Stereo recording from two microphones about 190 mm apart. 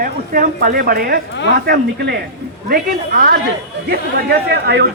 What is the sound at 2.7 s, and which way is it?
A man's voice, 50° right (ahead or behind).